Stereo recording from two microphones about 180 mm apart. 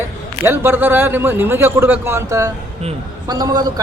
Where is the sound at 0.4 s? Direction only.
10° right (ahead or behind).